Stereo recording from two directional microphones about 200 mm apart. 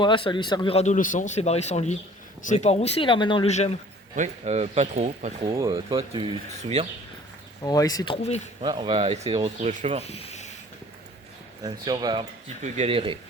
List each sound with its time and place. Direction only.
0.0 s speech: 25° left (ahead or behind)
4.1 s speech: 35° right (ahead or behind)
5.5 s speech: 20° right (ahead or behind); by 6.8 s 35° right (ahead or behind)
7.6 s speech: 20° left (ahead or behind)
8.6 s speech: 25° right (ahead or behind)
10.0 s speech: 30° left (ahead or behind)
11.6 s speech: 20° right (ahead or behind)
12.6 s speech: 35° right (ahead or behind)